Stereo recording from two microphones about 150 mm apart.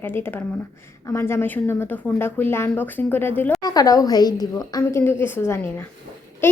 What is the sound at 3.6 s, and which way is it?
A woman's voice, 25° left (ahead or behind).